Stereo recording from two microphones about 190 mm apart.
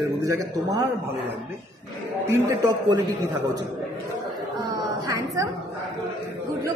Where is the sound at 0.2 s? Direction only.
15° right (ahead or behind).